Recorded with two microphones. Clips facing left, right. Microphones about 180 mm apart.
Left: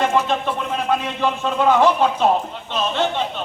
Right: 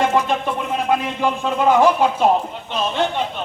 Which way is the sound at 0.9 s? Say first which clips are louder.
Right 1 dB; 10° right (ahead or behind).